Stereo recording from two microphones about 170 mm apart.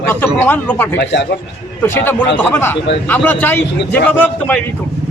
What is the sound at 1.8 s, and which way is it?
Speech, 10° left (ahead or behind).